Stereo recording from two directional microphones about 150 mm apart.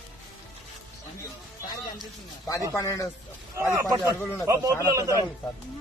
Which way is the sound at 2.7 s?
20° left (ahead or behind).